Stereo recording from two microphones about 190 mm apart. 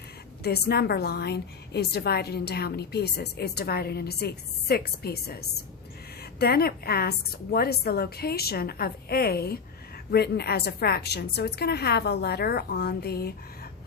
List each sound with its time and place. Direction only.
0.4 s a woman's voice: 55° left (ahead or behind)